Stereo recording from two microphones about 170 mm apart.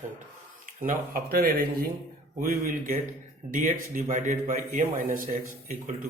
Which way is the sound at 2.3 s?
55° right (ahead or behind).